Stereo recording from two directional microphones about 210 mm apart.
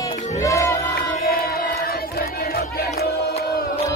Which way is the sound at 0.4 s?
15° left (ahead or behind).